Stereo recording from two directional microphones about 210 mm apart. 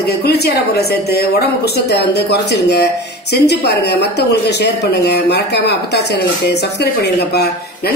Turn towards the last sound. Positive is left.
turn(degrees=50)  # may be behind; listen again after turning